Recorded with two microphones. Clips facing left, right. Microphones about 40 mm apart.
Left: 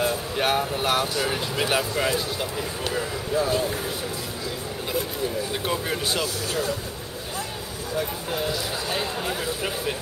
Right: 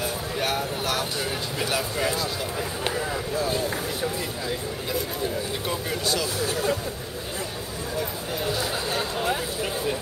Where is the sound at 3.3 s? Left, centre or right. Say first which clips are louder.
Left 4 dB; left.